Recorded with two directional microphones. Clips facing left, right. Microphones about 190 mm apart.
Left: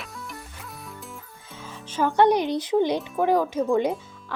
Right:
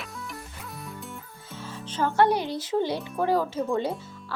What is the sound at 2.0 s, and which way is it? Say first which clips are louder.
Speech: left 3 dB; 15° left (ahead or behind).